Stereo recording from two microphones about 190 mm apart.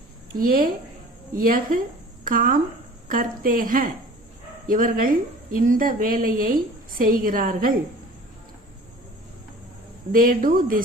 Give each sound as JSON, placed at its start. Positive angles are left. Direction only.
{"t": 0.3, "sound": "a woman's voice", "side_deg": -50}
{"t": 10.1, "sound": "a woman's voice", "side_deg": -45}